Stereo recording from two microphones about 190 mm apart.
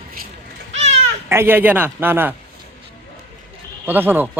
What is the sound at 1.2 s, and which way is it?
Speech, 10° right (ahead or behind).